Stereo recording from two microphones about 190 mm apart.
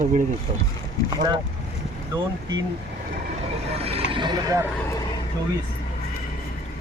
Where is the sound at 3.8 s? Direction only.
30° right (ahead or behind).